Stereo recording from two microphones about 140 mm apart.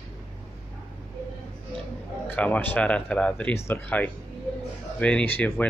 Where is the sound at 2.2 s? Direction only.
10° left (ahead or behind).